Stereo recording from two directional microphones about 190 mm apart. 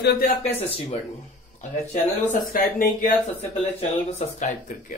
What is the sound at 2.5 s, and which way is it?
Speech, 45° left (ahead or behind).